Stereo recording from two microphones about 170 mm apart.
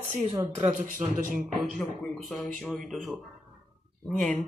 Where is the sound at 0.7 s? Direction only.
50° right (ahead or behind).